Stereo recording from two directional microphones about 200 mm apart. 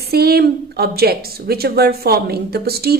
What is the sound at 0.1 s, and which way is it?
A woman's voice, 50° right (ahead or behind).